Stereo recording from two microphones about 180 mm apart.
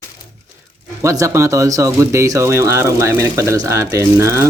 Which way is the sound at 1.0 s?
15° right (ahead or behind).